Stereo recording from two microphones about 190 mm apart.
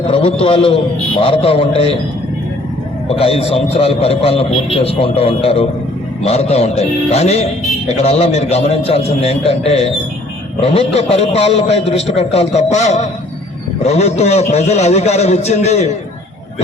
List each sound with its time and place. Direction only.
0.1 s a man's voice: 30° left (ahead or behind)
3.1 s a man's voice: 30° left (ahead or behind)